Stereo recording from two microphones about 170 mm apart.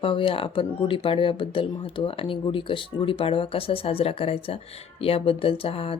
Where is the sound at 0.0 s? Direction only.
30° left (ahead or behind).